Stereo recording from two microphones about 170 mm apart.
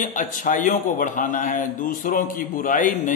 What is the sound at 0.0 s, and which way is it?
A man's voice, 50° left (ahead or behind).